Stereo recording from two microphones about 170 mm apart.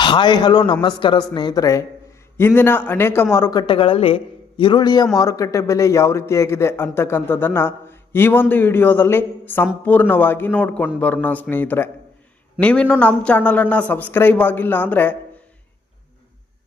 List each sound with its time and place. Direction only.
0.0 s a man's voice: 25° left (ahead or behind); by 15.1 s 10° left (ahead or behind)